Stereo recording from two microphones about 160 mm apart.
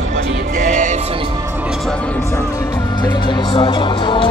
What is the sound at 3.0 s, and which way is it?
Speech, 30° left (ahead or behind).